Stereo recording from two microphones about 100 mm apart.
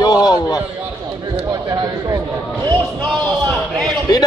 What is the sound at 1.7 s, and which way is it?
Speech, 45° right (ahead or behind).